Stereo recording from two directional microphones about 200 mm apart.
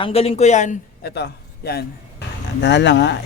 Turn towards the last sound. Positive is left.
turn(degrees=60)  # may be behind; listen again after turning